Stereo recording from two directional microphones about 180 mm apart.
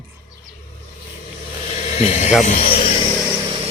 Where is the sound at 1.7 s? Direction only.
35° left (ahead or behind).